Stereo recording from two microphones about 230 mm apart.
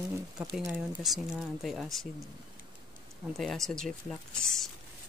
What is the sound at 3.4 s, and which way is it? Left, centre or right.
Speech, centre.